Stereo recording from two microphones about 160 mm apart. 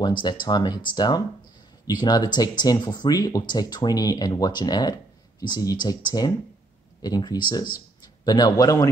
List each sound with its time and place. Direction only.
0.0 s speech: 30° left (ahead or behind)